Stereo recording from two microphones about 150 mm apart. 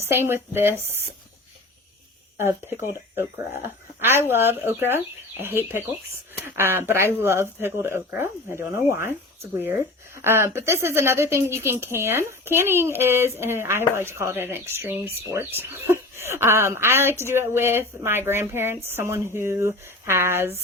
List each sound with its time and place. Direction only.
0.0 s speech: 15° right (ahead or behind)
2.4 s speech: 15° right (ahead or behind)
10.2 s speech: 15° right (ahead or behind)